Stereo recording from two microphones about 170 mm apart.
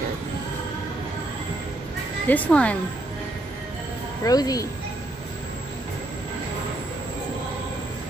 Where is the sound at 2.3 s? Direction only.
10° left (ahead or behind).